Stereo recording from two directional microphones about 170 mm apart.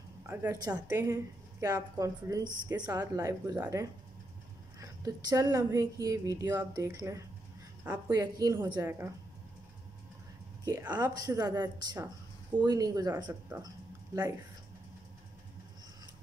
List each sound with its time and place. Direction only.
0.3 s a woman's voice: 15° right (ahead or behind)
10.9 s speech: 20° right (ahead or behind)